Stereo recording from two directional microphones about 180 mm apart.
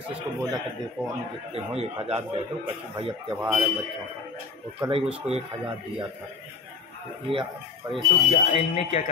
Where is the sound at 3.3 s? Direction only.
Centre (ahead or behind).